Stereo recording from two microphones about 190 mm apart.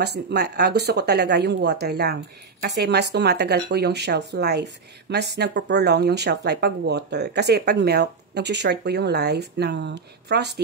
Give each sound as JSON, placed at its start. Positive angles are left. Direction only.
{"t": 0.0, "sound": "speech", "side_deg": -60}